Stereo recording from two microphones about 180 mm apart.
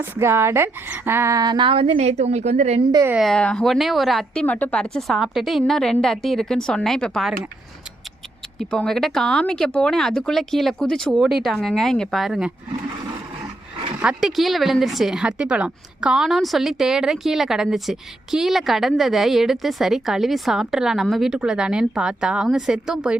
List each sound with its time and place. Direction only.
0.0 s a woman's voice: 15° right (ahead or behind); by 2.8 s 40° right (ahead or behind)
2.9 s a woman's voice: 15° right (ahead or behind)
3.2 s a woman's voice: 5° left (ahead or behind)
8.5 s a woman's voice: 5° left (ahead or behind)
14.0 s a woman's voice: 5° right (ahead or behind)